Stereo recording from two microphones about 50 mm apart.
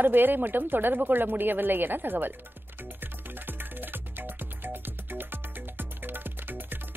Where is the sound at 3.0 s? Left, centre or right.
Right.